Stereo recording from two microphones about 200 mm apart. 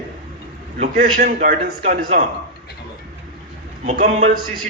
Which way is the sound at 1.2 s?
40° right (ahead or behind).